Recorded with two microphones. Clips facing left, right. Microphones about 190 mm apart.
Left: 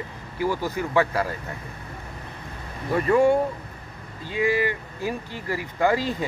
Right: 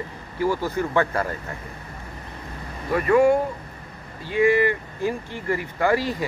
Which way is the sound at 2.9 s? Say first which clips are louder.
Right 1 dB; 25° left (ahead or behind).